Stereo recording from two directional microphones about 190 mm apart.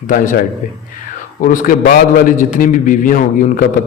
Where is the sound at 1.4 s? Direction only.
45° left (ahead or behind).